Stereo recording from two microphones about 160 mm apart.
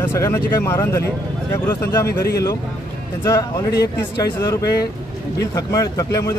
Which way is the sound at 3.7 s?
90° left.